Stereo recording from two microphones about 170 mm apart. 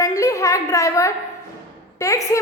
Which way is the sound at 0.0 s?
20° left (ahead or behind).